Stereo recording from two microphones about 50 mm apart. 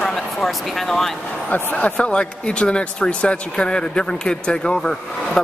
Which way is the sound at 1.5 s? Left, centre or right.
Left.